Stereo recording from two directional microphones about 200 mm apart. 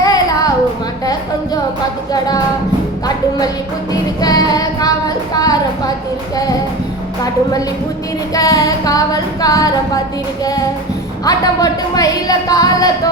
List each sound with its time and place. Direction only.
0.0 s child singing: 20° left (ahead or behind)
4.2 s music: 20° left (ahead or behind)
8.3 s female singing: 15° left (ahead or behind)
11.3 s music: 20° left (ahead or behind)
12.5 s female singing: 15° left (ahead or behind)